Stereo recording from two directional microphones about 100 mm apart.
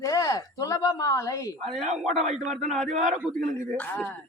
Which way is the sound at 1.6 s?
Centre (ahead or behind).